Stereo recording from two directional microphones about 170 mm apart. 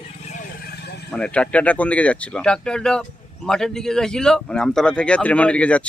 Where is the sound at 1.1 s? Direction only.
5° left (ahead or behind).